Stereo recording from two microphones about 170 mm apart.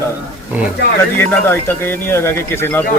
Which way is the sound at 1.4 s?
15° left (ahead or behind).